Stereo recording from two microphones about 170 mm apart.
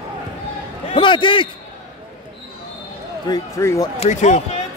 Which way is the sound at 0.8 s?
30° left (ahead or behind).